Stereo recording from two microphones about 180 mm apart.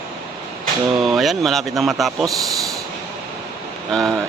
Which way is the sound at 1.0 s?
Centre (ahead or behind).